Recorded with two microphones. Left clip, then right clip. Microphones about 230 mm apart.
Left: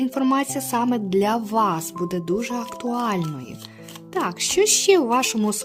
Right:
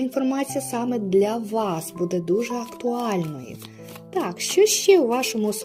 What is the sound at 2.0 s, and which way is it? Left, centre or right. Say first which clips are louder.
Speech: right 3 dB; left.